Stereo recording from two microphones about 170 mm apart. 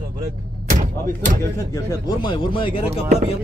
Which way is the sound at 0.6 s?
45° right (ahead or behind).